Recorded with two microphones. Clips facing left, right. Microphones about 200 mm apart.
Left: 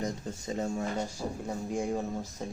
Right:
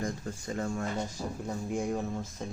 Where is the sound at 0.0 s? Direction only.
20° left (ahead or behind).